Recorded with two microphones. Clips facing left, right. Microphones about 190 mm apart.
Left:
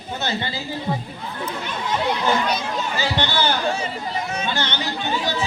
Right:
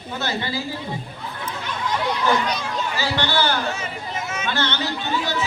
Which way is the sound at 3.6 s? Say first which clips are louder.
Left 4 dB; 35° left (ahead or behind).